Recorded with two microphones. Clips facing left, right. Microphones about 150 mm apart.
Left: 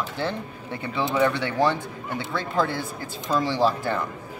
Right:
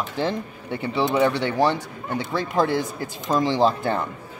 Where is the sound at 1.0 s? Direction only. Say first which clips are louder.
Right 2 dB; 20° right (ahead or behind).